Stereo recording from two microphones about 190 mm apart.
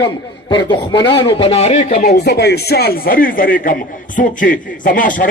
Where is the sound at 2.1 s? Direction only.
60° left (ahead or behind).